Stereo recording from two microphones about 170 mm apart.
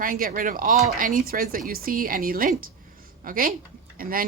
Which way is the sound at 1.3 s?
60° right (ahead or behind).